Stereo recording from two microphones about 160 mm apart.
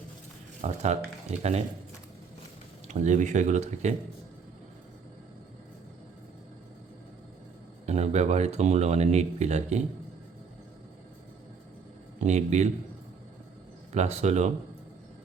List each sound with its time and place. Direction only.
0.6 s speech: 45° right (ahead or behind)
2.8 s speech: 50° right (ahead or behind)
7.9 s speech: 45° right (ahead or behind)
12.2 s speech: 45° right (ahead or behind)
13.9 s speech: 45° right (ahead or behind)